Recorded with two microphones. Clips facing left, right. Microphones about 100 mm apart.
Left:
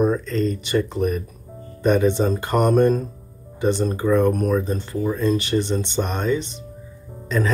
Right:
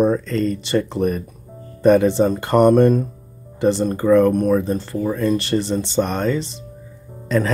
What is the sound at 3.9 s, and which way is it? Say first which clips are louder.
Speech: right 5 dB; 45° right (ahead or behind).